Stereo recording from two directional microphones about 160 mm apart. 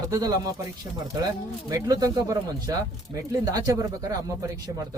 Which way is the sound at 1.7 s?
20° right (ahead or behind).